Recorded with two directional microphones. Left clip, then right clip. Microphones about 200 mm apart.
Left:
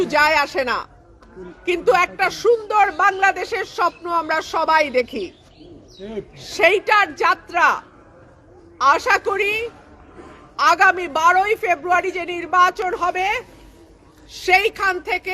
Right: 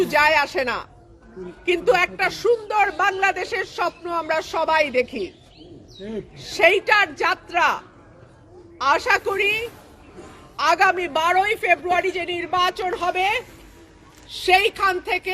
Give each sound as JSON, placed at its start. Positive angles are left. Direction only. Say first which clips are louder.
{"t": 0.0, "sound": "speech", "louder": "left 1 dB", "side_deg": 0}
{"t": 6.0, "sound": "speech", "louder": "left 1 dB", "side_deg": 25}
{"t": 6.4, "sound": "speech", "louder": "left 1 dB", "side_deg": 0}